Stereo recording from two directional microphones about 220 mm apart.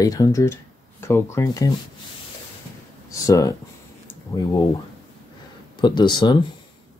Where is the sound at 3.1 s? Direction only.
15° left (ahead or behind).